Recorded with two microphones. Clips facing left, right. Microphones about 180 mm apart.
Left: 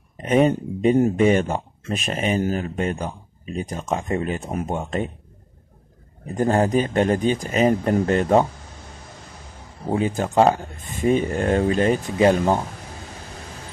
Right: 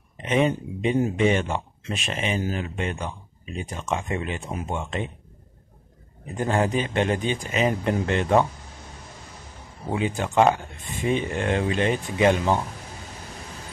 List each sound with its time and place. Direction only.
0.2 s speech: 45° left (ahead or behind)
6.2 s speech: 40° left (ahead or behind)
9.9 s speech: 40° left (ahead or behind)